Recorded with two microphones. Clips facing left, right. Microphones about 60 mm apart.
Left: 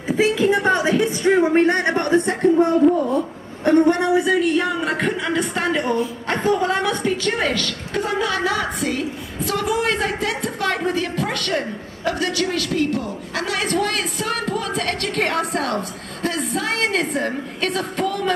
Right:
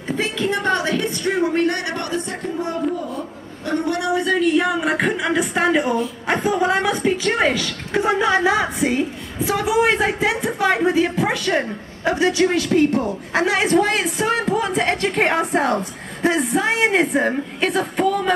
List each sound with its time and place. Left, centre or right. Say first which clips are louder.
0.1 s a sound: left 5 dB; centre
1.4 s speech: even; left
3.6 s a woman's voice: left 6 dB; left
4.2 s a woman's voice: even; centre